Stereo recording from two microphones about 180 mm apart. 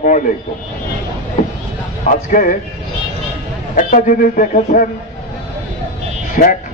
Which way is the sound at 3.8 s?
45° left (ahead or behind).